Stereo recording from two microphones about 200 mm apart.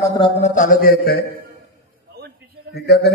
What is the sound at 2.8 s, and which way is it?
Speech, 55° left (ahead or behind).